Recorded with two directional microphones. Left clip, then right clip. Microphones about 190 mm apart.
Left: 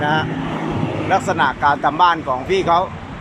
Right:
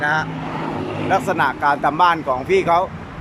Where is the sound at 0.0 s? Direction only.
10° left (ahead or behind).